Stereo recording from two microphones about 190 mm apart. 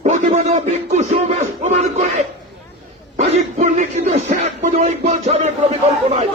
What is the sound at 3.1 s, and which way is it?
Speech, 35° right (ahead or behind).